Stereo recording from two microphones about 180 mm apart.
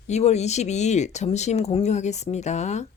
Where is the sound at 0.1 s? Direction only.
40° left (ahead or behind).